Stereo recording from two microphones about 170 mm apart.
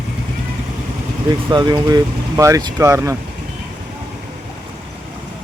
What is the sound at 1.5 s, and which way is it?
Speech, 25° right (ahead or behind).